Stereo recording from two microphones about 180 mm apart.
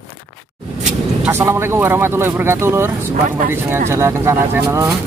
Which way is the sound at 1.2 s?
15° right (ahead or behind).